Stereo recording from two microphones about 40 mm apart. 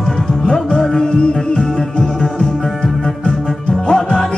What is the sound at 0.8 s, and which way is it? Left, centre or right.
Music, centre.